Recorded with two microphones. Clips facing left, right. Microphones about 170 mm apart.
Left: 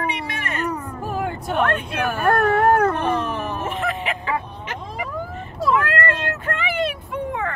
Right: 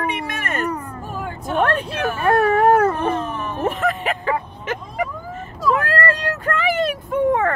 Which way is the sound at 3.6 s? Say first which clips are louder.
Right 4 dB; 40° right (ahead or behind).